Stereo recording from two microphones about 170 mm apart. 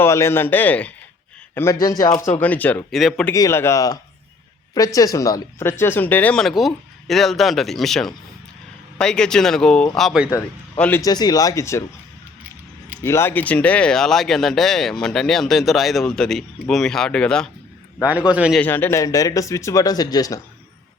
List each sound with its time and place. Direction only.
0.0 s speech: 15° left (ahead or behind)
2.0 s speech: 45° left (ahead or behind)
2.4 s speech: 10° left (ahead or behind)
3.3 s speech: 20° left (ahead or behind); by 10.2 s centre (ahead or behind)
10.2 s speech: 10° left (ahead or behind)
11.0 s speech: 25° left (ahead or behind)
13.0 s speech: 15° left (ahead or behind)
18.3 s speech: 5° right (ahead or behind)
18.6 s speech: 10° left (ahead or behind)